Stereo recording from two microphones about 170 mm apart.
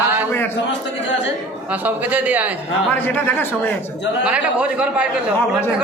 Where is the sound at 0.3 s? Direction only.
15° left (ahead or behind).